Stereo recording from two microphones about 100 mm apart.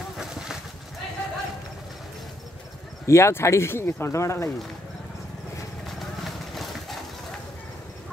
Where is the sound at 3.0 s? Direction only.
30° left (ahead or behind).